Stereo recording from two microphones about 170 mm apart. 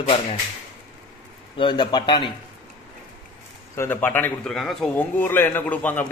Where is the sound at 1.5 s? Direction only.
25° left (ahead or behind).